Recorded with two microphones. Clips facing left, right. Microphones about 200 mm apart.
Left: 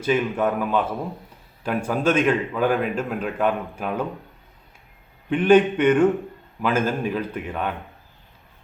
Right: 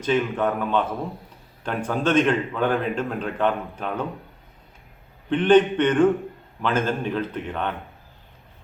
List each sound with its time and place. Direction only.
0.0 s speech: 10° left (ahead or behind)
5.3 s speech: 10° left (ahead or behind)